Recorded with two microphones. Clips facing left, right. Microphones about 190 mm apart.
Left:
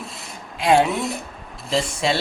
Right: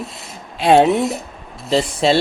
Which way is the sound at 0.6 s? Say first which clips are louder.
Right 5 dB; 30° right (ahead or behind).